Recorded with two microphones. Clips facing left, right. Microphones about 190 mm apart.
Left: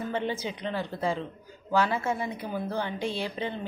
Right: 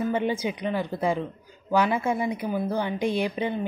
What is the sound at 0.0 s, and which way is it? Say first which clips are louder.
A woman's voice: right 5 dB; 15° right (ahead or behind).